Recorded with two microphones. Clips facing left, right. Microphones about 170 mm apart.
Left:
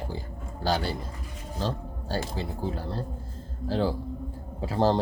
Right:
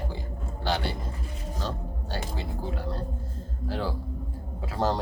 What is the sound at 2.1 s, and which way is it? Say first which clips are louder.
Speech: left 4 dB; 30° left (ahead or behind).